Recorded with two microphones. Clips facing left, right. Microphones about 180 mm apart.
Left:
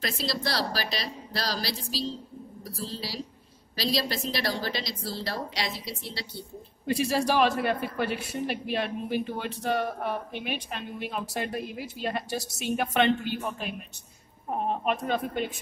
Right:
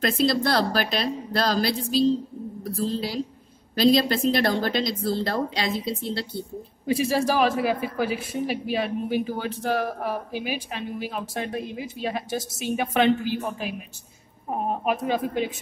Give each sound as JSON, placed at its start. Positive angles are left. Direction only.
{"t": 0.0, "sound": "a woman's voice", "side_deg": -55}
{"t": 6.9, "sound": "a man's voice", "side_deg": 0}